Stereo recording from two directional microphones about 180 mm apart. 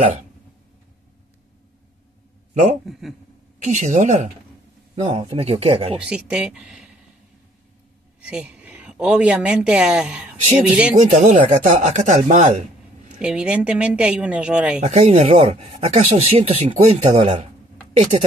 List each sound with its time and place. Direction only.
2.5 s a man's voice: 40° right (ahead or behind)
2.8 s speech: centre (ahead or behind)
3.5 s speech: 45° right (ahead or behind)
5.0 s speech: 30° right (ahead or behind)
5.9 s speech: 5° right (ahead or behind)
8.2 s a woman's voice: 5° right (ahead or behind)
11.0 s speech: 40° right (ahead or behind)
13.2 s speech: 5° right (ahead or behind)
14.8 s speech: 40° right (ahead or behind)